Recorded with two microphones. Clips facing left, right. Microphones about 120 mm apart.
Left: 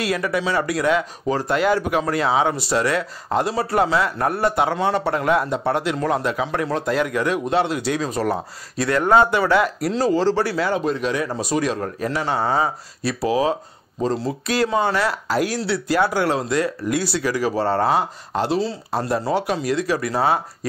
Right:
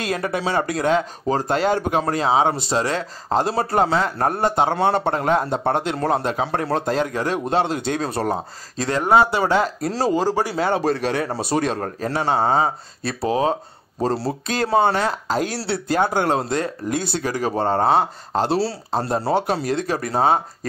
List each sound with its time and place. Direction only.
0.0 s speech: 30° right (ahead or behind)
10.1 s speech: 15° right (ahead or behind)
10.8 s speech: 40° right (ahead or behind)
12.1 s speech: 30° right (ahead or behind)
15.0 s speech: 25° right (ahead or behind)
15.9 s speech: 50° right (ahead or behind)
17.6 s speech: 25° right (ahead or behind); by 20.2 s 45° right (ahead or behind)